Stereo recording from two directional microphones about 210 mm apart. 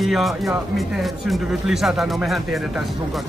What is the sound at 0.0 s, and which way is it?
Speech, centre (ahead or behind).